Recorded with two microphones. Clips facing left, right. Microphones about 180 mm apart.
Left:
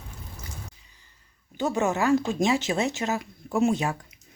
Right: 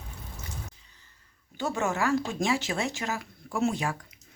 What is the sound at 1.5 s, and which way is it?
Speech, 20° left (ahead or behind).